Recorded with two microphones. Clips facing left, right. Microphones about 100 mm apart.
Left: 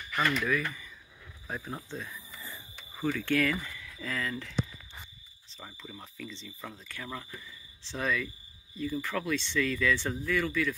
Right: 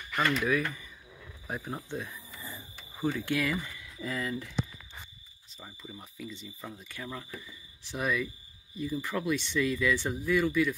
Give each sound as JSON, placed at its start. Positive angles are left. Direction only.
{"t": 0.1, "sound": "speech", "side_deg": -15}
{"t": 1.5, "sound": "cricket", "side_deg": -15}
{"t": 3.0, "sound": "speech", "side_deg": -20}
{"t": 5.6, "sound": "speech", "side_deg": -10}